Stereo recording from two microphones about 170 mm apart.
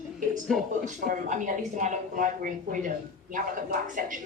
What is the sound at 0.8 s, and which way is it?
Speech, 50° right (ahead or behind).